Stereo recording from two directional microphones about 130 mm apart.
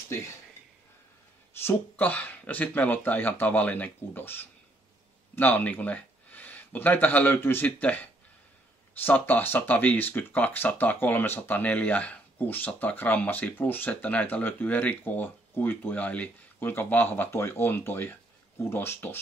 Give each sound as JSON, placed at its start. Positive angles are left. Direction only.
{"t": 1.6, "sound": "speech", "side_deg": 15}
{"t": 9.0, "sound": "speech", "side_deg": 15}